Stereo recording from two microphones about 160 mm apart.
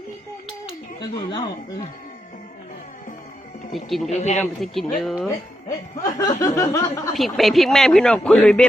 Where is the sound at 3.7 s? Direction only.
Centre (ahead or behind).